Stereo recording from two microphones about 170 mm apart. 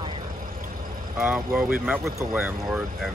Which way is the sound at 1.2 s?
5° right (ahead or behind).